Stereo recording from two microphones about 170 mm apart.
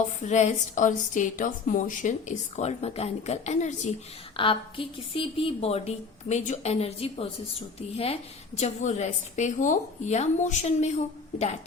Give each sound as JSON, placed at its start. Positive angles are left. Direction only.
{"t": 0.2, "sound": "a woman's voice", "side_deg": 45}
{"t": 4.4, "sound": "a woman's voice", "side_deg": 30}